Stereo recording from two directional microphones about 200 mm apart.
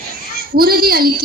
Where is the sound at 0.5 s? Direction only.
50° right (ahead or behind).